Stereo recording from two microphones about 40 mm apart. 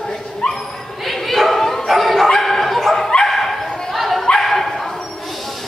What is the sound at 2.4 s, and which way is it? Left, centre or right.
Dog, centre.